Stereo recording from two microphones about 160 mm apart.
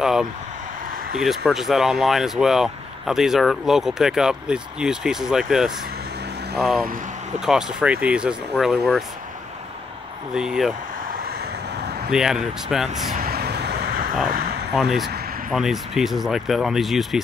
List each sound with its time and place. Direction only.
0.0 s speech: 5° right (ahead or behind)
10.3 s speech: 5° right (ahead or behind)
12.1 s speech: 5° right (ahead or behind)
13.1 s vehicle: 70° right (ahead or behind)
14.7 s speech: centre (ahead or behind)